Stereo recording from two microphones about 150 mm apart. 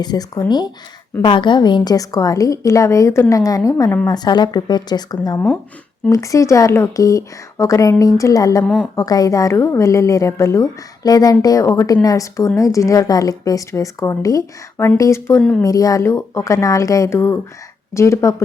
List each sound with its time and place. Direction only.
0.0 s a woman's voice: 25° left (ahead or behind)
8.6 s a woman's voice: centre (ahead or behind)
9.0 s a woman's voice: 25° left (ahead or behind)
15.4 s a woman's voice: 5° left (ahead or behind)
15.6 s a woman's voice: 25° left (ahead or behind)